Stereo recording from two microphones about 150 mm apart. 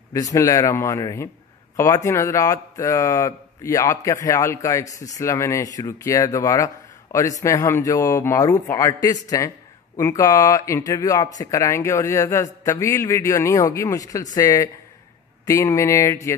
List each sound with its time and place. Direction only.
0.1 s speech: 25° left (ahead or behind)